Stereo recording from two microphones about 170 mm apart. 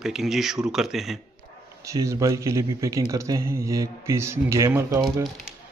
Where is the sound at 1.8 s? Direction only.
20° right (ahead or behind).